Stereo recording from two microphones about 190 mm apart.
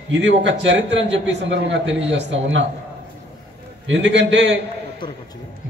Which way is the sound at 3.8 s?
70° right (ahead or behind).